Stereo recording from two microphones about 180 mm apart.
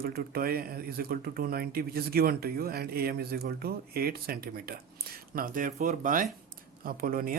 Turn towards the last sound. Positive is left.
turn(degrees=-50)  # may be behind; listen again after turning